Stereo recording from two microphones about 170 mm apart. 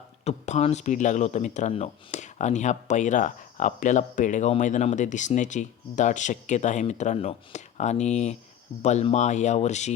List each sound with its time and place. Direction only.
0.3 s speech: 40° left (ahead or behind)